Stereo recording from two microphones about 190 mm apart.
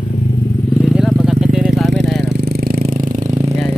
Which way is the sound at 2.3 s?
60° right (ahead or behind).